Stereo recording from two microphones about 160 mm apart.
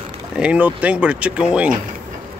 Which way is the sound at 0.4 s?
10° right (ahead or behind).